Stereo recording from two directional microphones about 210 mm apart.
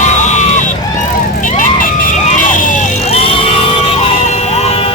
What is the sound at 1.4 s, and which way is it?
Vehicle, 40° left (ahead or behind).